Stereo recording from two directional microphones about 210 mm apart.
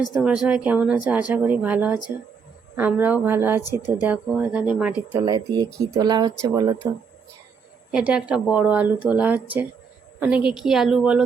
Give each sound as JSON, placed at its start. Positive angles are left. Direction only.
{"t": 0.2, "sound": "speech", "side_deg": -5}
{"t": 3.6, "sound": "speech", "side_deg": 20}
{"t": 4.0, "sound": "speech", "side_deg": -5}
{"t": 5.2, "sound": "speech", "side_deg": -20}
{"t": 7.9, "sound": "speech", "side_deg": -5}